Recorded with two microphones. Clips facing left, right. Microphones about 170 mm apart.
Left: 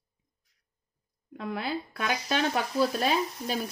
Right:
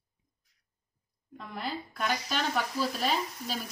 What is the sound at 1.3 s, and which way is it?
Speech, 65° left (ahead or behind).